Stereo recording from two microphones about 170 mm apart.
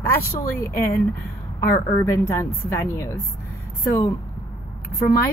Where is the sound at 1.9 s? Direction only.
15° left (ahead or behind).